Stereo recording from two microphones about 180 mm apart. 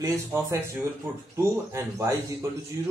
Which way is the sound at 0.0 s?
15° right (ahead or behind).